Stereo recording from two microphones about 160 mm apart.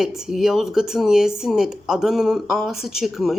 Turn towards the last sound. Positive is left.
turn(degrees=0)  # may be behind; listen again after turning